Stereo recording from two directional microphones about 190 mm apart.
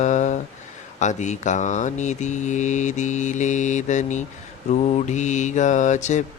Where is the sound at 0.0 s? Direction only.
40° left (ahead or behind).